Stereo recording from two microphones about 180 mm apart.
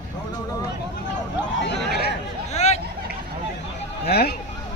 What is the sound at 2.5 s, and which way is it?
Hubbub, 40° left (ahead or behind).